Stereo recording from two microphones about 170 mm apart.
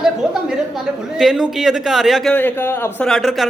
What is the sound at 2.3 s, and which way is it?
A man's voice, 10° left (ahead or behind).